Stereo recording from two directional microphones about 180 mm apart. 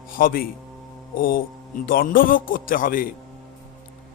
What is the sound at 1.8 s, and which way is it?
A man's voice, 55° left (ahead or behind).